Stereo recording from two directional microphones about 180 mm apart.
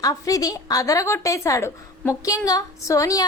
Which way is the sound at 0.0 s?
20° left (ahead or behind).